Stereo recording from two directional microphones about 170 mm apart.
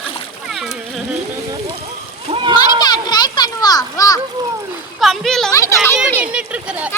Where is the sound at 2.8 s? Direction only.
25° left (ahead or behind).